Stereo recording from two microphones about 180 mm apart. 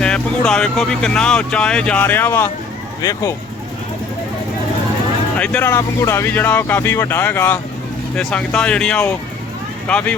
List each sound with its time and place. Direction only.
0.0 s speech: 5° left (ahead or behind)
5.4 s speech: 5° left (ahead or behind)